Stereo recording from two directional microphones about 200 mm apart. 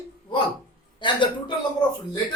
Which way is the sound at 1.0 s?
25° left (ahead or behind).